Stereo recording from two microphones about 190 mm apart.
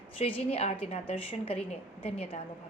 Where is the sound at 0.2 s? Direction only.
35° left (ahead or behind).